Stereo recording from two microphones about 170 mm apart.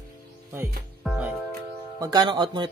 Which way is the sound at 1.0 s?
Centre (ahead or behind).